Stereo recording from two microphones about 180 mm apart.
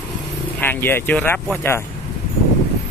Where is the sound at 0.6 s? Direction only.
10° left (ahead or behind).